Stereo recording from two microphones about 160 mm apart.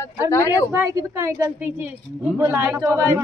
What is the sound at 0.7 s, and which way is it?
Speech, 15° right (ahead or behind).